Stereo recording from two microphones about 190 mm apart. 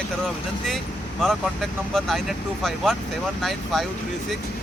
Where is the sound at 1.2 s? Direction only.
Centre (ahead or behind).